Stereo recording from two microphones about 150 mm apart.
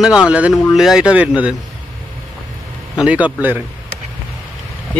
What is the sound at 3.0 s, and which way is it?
Speech, 10° right (ahead or behind).